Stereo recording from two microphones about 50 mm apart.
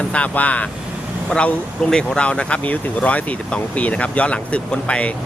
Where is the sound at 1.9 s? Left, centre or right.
Centre.